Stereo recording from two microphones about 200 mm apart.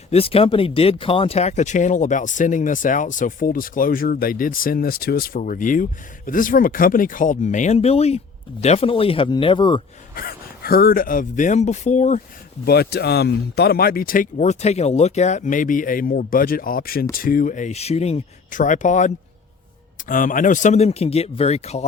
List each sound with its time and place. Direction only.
0.1 s speech: 30° left (ahead or behind)
10.2 s speech: 50° left (ahead or behind)
12.6 s speech: 55° left (ahead or behind); by 21.8 s 30° left (ahead or behind)